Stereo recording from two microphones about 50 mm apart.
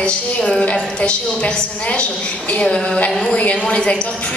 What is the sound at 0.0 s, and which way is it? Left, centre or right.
A woman's voice, left.